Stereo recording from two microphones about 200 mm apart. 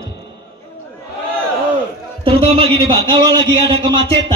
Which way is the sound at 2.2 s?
25° right (ahead or behind).